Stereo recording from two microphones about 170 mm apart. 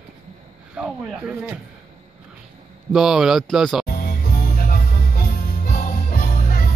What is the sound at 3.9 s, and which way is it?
Music, 60° left (ahead or behind).